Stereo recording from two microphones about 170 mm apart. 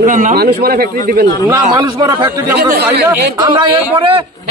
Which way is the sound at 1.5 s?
20° right (ahead or behind).